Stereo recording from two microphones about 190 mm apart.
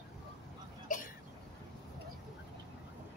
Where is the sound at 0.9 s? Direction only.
45° left (ahead or behind).